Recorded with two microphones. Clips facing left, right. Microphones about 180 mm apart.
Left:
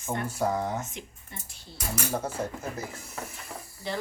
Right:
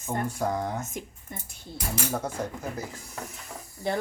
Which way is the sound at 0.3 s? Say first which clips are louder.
Left 4 dB; 5° left (ahead or behind).